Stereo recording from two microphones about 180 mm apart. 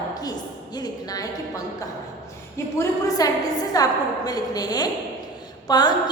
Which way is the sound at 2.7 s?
20° left (ahead or behind).